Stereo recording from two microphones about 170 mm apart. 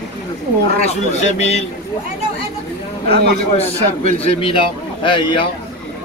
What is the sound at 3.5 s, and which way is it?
A man's voice, 35° left (ahead or behind).